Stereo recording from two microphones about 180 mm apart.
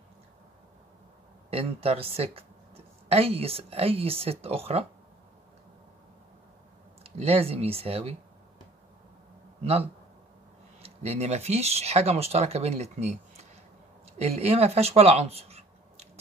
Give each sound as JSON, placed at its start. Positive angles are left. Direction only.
{"t": 1.5, "sound": "speech", "side_deg": -35}
{"t": 7.0, "sound": "speech", "side_deg": -35}
{"t": 10.8, "sound": "speech", "side_deg": -35}